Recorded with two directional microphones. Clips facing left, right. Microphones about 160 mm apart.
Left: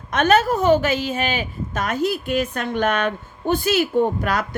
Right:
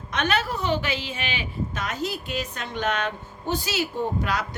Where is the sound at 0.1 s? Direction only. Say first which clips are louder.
Left 8 dB; 45° left (ahead or behind).